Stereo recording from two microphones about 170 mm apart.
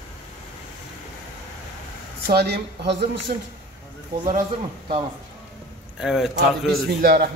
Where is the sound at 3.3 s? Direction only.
55° right (ahead or behind).